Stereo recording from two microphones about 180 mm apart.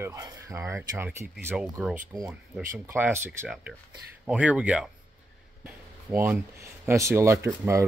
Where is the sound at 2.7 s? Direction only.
15° right (ahead or behind).